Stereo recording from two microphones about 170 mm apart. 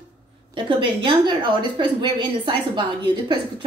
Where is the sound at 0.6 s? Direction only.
30° right (ahead or behind).